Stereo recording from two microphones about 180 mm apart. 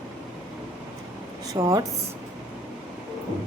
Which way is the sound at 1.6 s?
20° right (ahead or behind).